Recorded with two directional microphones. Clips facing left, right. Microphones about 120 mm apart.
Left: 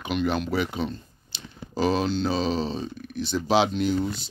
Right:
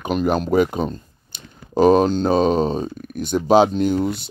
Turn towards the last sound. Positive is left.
turn(degrees=-55)  # may be behind; listen again after turning